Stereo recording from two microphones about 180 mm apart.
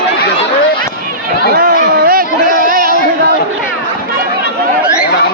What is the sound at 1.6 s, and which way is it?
Chatter, 55° right (ahead or behind).